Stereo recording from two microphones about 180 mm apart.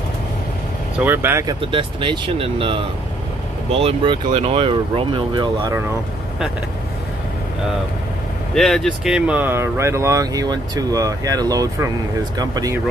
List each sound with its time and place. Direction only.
0.9 s speech: 10° right (ahead or behind)
1.7 s speech: 30° right (ahead or behind)
8.5 s speech: centre (ahead or behind); by 12.7 s 20° right (ahead or behind)